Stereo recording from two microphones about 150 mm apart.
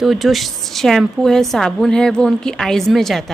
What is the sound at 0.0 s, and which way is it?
A woman's voice, centre (ahead or behind).